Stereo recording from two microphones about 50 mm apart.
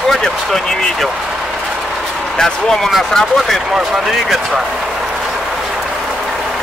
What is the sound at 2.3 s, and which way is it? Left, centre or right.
Speech, centre.